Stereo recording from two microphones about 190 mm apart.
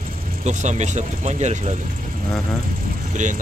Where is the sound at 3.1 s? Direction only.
40° right (ahead or behind).